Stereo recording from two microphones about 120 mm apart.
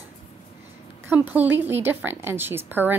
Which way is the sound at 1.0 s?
15° right (ahead or behind).